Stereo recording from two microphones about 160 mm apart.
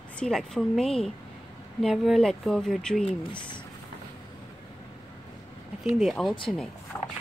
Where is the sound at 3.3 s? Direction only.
30° left (ahead or behind).